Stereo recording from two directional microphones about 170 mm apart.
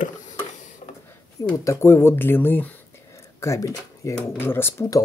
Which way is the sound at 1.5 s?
15° left (ahead or behind).